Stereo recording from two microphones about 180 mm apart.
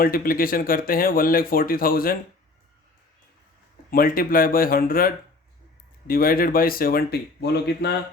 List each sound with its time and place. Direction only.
0.0 s speech: 55° left (ahead or behind)
3.9 s speech: 55° left (ahead or behind)